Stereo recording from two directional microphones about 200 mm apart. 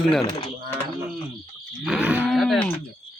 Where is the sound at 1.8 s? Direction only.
5° right (ahead or behind).